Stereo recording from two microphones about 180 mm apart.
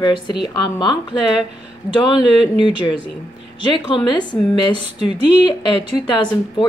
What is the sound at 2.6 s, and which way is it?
A woman's voice, 25° left (ahead or behind).